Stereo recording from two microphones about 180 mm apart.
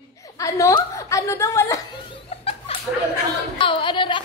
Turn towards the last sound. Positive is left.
turn(degrees=25)  # may be behind; listen again after turning